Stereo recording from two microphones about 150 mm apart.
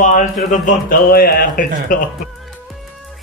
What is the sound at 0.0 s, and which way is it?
Speech, 60° left (ahead or behind).